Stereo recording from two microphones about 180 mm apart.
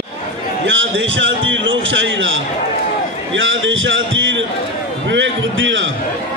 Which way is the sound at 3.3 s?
90° right.